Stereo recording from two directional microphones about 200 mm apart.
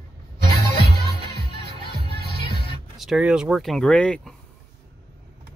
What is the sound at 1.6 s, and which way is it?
Music, 50° right (ahead or behind).